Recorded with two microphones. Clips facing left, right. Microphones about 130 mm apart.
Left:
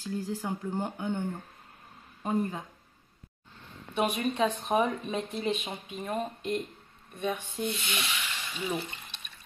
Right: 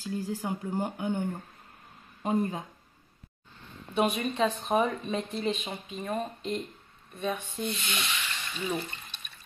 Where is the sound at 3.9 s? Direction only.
5° left (ahead or behind).